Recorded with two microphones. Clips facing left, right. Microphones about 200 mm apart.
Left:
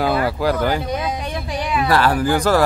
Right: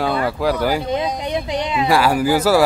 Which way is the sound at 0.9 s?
20° right (ahead or behind).